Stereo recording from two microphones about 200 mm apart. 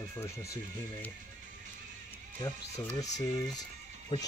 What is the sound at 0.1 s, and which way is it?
Speech, 15° left (ahead or behind).